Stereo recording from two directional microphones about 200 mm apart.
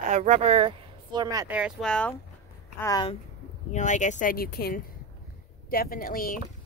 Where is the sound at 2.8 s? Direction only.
15° left (ahead or behind).